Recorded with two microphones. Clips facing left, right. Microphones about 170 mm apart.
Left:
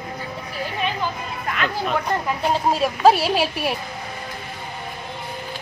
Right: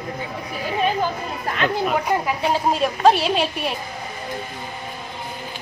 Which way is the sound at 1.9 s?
5° right (ahead or behind).